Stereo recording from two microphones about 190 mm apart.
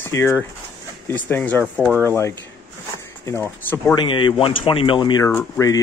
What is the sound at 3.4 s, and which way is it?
Speech, 10° left (ahead or behind).